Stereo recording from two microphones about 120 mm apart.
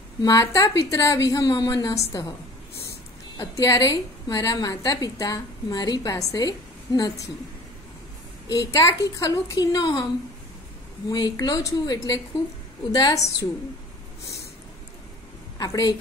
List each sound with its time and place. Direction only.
0.2 s a woman's voice: 30° left (ahead or behind)
3.3 s a woman's voice: 30° left (ahead or behind)
8.5 s a woman's voice: 30° left (ahead or behind)
11.1 s a woman's voice: 35° left (ahead or behind)
15.5 s a woman's voice: 30° left (ahead or behind)